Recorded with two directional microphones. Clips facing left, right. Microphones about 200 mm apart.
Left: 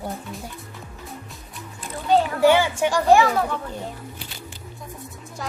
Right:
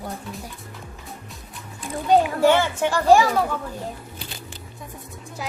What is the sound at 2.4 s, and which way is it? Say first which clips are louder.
Speech: left 1 dB; 10° left (ahead or behind).